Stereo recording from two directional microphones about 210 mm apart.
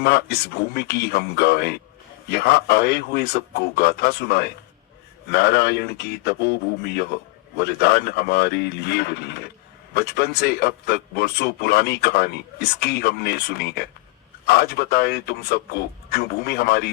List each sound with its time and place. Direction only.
0.0 s speech: 50° left (ahead or behind)